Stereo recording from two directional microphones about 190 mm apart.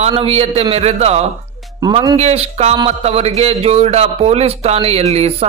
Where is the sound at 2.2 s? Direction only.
35° right (ahead or behind).